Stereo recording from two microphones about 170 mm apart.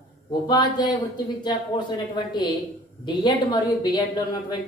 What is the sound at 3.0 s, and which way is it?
A woman's voice, 25° left (ahead or behind).